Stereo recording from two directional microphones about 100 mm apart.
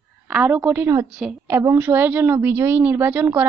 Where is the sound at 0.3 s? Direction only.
15° right (ahead or behind).